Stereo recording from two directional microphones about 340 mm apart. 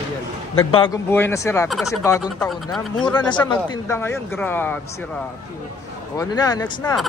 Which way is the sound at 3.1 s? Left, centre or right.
Centre.